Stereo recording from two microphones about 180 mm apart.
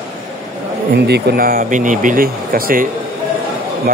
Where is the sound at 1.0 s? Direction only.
60° right (ahead or behind).